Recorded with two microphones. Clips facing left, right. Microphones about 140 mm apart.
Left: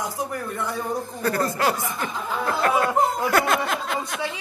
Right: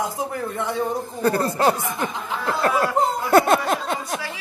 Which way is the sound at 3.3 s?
25° right (ahead or behind).